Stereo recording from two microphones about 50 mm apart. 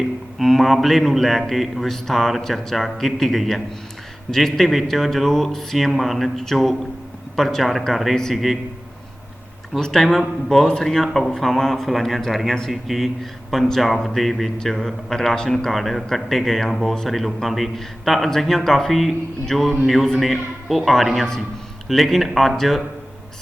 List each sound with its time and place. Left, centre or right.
0.3 s a man's voice: centre
9.8 s a man's voice: centre